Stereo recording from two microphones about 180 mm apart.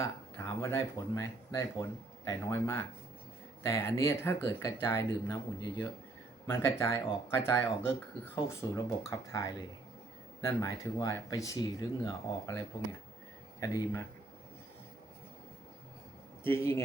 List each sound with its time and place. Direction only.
0.0 s speech: 15° left (ahead or behind)
6.5 s speech: 15° left (ahead or behind)
16.4 s speech: 10° left (ahead or behind)